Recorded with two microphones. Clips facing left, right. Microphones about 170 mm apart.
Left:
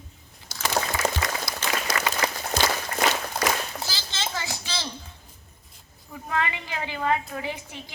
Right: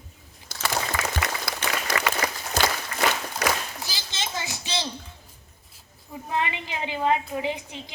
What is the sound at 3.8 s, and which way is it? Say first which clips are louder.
Children playing: left 1 dB; 15° right (ahead or behind).